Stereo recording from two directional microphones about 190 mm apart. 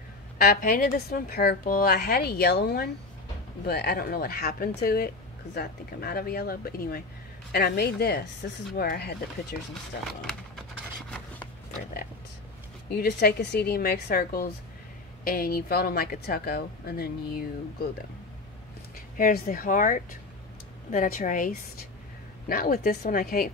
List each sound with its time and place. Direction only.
0.4 s a woman's voice: 50° left (ahead or behind)
10.0 s a sound: centre (ahead or behind)
12.9 s a woman's voice: 60° left (ahead or behind)
19.1 s speech: 50° left (ahead or behind)